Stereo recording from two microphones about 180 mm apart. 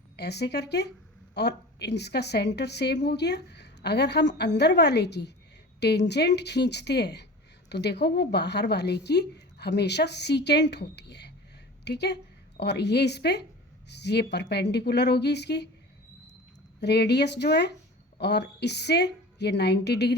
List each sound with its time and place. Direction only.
0.2 s speech: 65° left (ahead or behind)
16.8 s speech: 70° left (ahead or behind)